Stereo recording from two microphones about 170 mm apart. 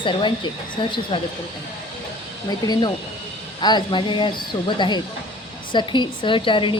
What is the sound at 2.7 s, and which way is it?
A woman's voice, 25° left (ahead or behind).